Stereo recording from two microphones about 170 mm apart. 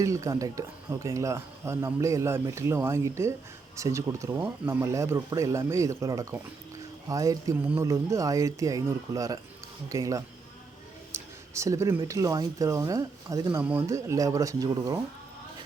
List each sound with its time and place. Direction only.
0.0 s speech: 20° right (ahead or behind)
11.1 s a sound: 15° right (ahead or behind)
11.9 s speech: 20° right (ahead or behind)